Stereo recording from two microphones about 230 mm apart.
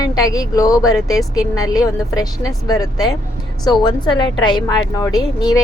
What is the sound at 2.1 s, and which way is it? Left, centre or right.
Speech, centre.